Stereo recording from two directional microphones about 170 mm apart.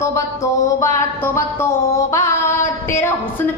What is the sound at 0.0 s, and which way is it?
Music, 20° left (ahead or behind).